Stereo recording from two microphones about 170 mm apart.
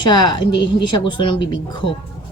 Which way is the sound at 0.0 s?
25° left (ahead or behind).